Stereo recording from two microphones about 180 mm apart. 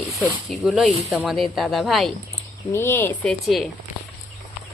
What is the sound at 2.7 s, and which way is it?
Speech, 15° left (ahead or behind).